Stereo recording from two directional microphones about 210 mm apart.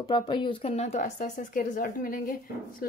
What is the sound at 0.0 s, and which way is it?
A woman's voice, 20° left (ahead or behind).